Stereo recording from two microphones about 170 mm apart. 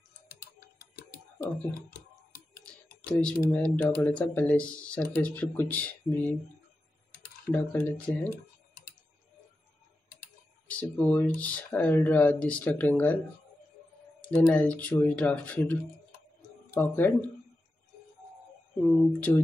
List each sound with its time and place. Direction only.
0.3 s tick-tock: 60° left (ahead or behind)
3.1 s speech: 5° left (ahead or behind)
7.5 s speech: 10° left (ahead or behind)
10.7 s speech: 10° left (ahead or behind)
14.2 s speech: 5° left (ahead or behind)
19.1 s speech: 10° left (ahead or behind)